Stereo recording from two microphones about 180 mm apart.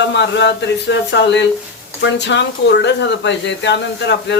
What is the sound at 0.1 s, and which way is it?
Speech, 75° left (ahead or behind).